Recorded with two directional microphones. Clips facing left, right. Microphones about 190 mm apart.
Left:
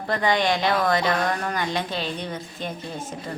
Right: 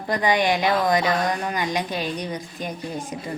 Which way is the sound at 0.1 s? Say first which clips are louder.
Right 1 dB; 15° right (ahead or behind).